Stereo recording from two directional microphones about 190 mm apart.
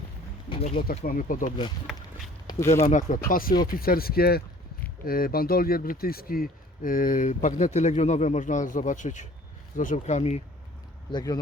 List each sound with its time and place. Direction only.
0.5 s speech: 25° left (ahead or behind)
0.9 s speech: 50° left (ahead or behind)
2.8 s speech: 45° left (ahead or behind)
11.1 s speech: 20° left (ahead or behind)